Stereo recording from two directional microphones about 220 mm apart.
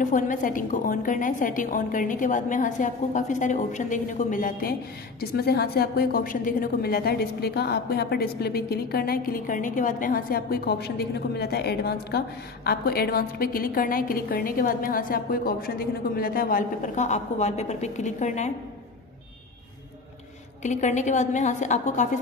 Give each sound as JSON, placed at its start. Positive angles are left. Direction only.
{"t": 0.0, "sound": "a woman's voice", "side_deg": 35}
{"t": 20.6, "sound": "a woman's voice", "side_deg": 35}